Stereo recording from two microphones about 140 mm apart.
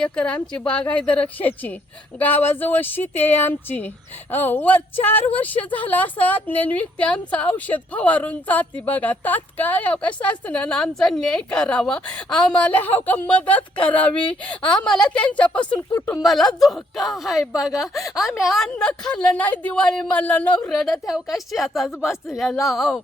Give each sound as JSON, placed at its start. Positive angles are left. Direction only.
{"t": 0.0, "sound": "a woman's voice", "side_deg": 10}
{"t": 16.2, "sound": "a woman's voice", "side_deg": 0}